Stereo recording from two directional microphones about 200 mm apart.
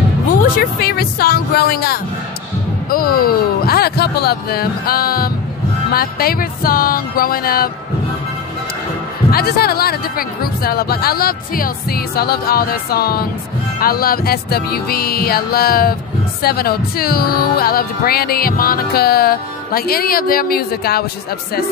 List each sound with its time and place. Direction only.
0.4 s speech: 50° left (ahead or behind)
9.3 s speech: 50° left (ahead or behind)